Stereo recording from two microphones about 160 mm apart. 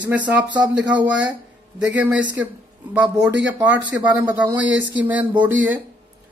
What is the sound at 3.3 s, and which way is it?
Speech, 90° right.